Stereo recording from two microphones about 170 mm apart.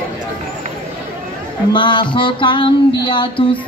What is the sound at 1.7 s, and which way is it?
Music, 25° left (ahead or behind).